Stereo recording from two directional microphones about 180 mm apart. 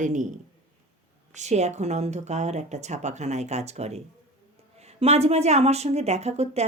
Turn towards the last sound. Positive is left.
turn(degrees=-35)  # may be behind; listen again after turning